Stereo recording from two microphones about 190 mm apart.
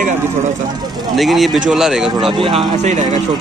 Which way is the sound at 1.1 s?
Centre (ahead or behind).